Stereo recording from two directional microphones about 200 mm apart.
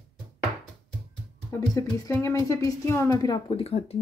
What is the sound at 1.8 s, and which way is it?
A woman's voice, 15° left (ahead or behind).